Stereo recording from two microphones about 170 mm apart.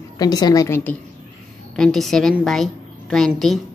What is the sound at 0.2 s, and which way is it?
Speech, 20° left (ahead or behind).